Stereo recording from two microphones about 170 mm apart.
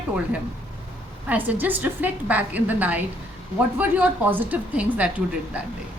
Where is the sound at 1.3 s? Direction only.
10° right (ahead or behind).